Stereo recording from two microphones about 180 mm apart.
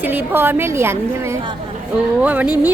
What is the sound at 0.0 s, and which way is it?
A woman's voice, 10° right (ahead or behind).